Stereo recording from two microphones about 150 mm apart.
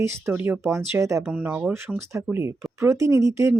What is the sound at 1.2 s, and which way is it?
Speech, 10° right (ahead or behind).